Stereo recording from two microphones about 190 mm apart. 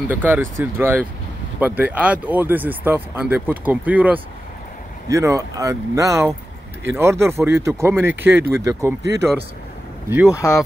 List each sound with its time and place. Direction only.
0.1 s speech: 10° right (ahead or behind)